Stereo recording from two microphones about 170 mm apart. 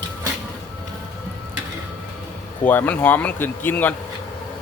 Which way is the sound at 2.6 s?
10° left (ahead or behind).